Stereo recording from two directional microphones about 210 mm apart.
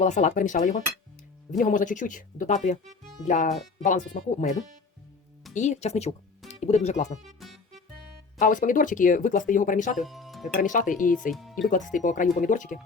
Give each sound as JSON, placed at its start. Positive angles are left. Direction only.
{"t": 0.0, "sound": "speech", "side_deg": 35}
{"t": 5.5, "sound": "speech", "side_deg": 35}
{"t": 7.3, "sound": "music", "side_deg": 0}
{"t": 8.4, "sound": "speech", "side_deg": 40}
{"t": 10.0, "sound": "speech", "side_deg": 0}
{"t": 10.5, "sound": "speech", "side_deg": 40}
{"t": 11.3, "sound": "speech", "side_deg": 0}
{"t": 11.7, "sound": "speech", "side_deg": 40}